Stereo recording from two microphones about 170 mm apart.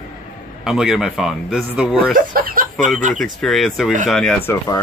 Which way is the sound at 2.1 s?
55° right (ahead or behind).